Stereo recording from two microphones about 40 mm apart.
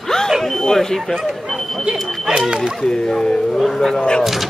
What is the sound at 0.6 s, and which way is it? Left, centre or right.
Speech, centre.